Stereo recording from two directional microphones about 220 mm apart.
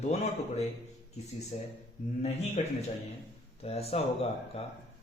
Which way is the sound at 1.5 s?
35° left (ahead or behind).